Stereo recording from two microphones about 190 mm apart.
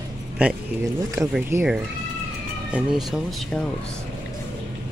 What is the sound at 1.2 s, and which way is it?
Speech, 15° right (ahead or behind).